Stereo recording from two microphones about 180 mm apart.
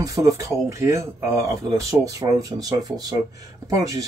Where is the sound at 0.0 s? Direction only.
20° right (ahead or behind).